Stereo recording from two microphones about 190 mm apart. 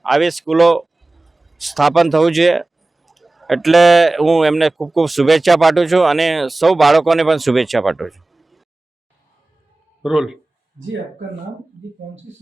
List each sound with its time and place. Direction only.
0.0 s speech: centre (ahead or behind)
10.0 s speech: 5° right (ahead or behind)